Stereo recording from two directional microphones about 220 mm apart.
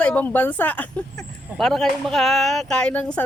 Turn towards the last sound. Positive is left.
turn(degrees=5)  # may be behind; listen again after turning